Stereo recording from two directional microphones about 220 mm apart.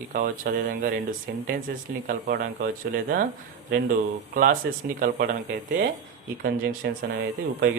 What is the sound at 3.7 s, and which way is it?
Speech, 40° right (ahead or behind).